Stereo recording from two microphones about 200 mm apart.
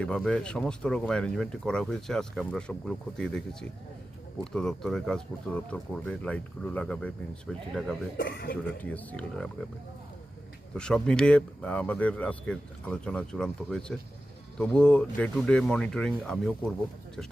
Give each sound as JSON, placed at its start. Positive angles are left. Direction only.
{"t": 0.0, "sound": "speech", "side_deg": 5}
{"t": 8.2, "sound": "speech", "side_deg": 55}
{"t": 8.8, "sound": "speech", "side_deg": 10}
{"t": 10.8, "sound": "speech", "side_deg": 5}